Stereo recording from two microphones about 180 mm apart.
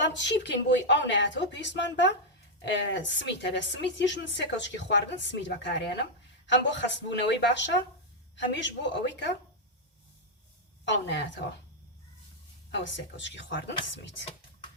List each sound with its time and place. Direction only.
0.0 s a woman's voice: 85° left
10.8 s a woman's voice: 80° left
12.7 s a woman's voice: 90° left